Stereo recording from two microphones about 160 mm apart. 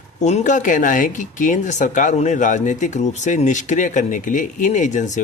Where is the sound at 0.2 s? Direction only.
45° left (ahead or behind).